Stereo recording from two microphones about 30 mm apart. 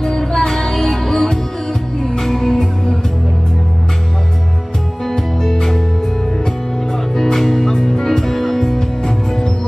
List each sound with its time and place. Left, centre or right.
0.0 s music: centre
5.0 s music: centre
7.3 s music: centre
8.7 s music: centre